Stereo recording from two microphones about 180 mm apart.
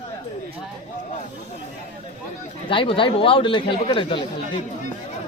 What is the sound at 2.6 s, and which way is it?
Speech, 30° left (ahead or behind).